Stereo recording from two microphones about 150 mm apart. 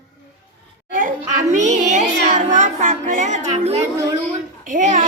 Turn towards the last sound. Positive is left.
turn(degrees=-55)  # may be behind; listen again after turning